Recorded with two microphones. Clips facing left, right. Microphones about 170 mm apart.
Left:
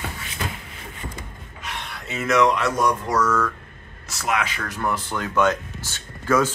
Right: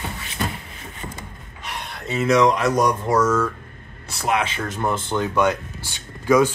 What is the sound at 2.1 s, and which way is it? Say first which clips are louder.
Speech: right 2 dB; 35° right (ahead or behind).